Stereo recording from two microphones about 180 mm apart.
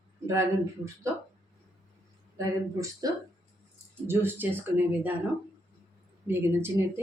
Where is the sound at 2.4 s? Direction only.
20° right (ahead or behind).